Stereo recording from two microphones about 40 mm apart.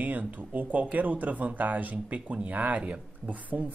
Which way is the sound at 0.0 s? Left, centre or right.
Right.